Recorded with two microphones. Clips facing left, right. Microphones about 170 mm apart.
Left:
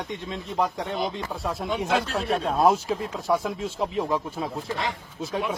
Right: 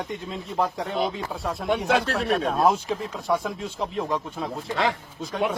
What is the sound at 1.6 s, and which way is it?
Speech, 70° right (ahead or behind).